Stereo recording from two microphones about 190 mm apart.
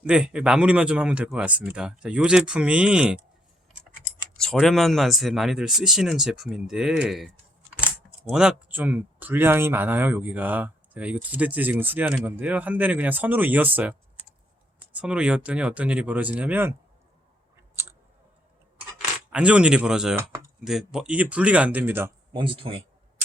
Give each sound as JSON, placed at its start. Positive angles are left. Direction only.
{"t": 0.0, "sound": "speech", "side_deg": -5}
{"t": 4.4, "sound": "speech", "side_deg": 5}
{"t": 14.9, "sound": "speech", "side_deg": -5}
{"t": 19.3, "sound": "speech", "side_deg": -5}
{"t": 22.4, "sound": "speech", "side_deg": -25}